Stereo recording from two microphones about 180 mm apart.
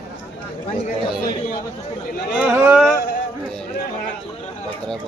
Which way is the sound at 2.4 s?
5° right (ahead or behind).